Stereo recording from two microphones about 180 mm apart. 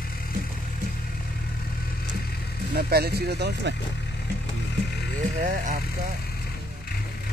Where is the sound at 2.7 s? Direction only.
60° right (ahead or behind).